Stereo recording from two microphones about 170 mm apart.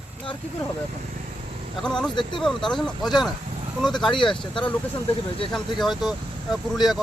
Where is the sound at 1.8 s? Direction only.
5° left (ahead or behind).